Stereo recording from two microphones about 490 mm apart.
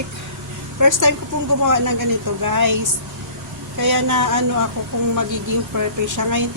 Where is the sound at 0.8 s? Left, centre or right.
Right.